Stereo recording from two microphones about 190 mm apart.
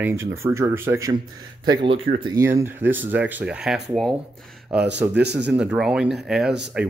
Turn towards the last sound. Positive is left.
turn(degrees=-5)  # may be behind; listen again after turning